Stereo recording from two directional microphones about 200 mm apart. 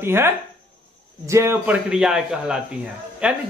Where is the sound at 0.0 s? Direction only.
10° right (ahead or behind).